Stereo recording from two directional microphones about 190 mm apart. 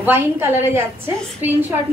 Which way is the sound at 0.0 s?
10° right (ahead or behind).